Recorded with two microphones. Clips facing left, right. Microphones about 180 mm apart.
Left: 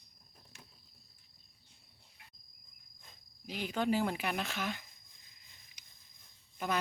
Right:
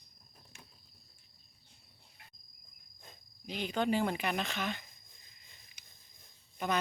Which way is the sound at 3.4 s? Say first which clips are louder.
Right 1 dB; 5° left (ahead or behind).